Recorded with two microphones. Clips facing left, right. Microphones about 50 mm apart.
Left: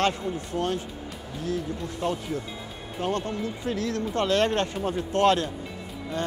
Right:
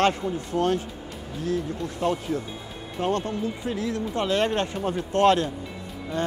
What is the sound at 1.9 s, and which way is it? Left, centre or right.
Speech, right.